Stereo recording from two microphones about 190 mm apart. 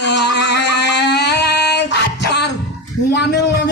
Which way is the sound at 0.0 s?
65° left (ahead or behind).